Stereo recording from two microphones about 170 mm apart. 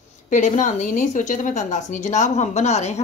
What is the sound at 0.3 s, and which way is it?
A woman's voice, 45° left (ahead or behind).